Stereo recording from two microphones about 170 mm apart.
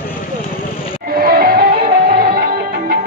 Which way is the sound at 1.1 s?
60° right (ahead or behind).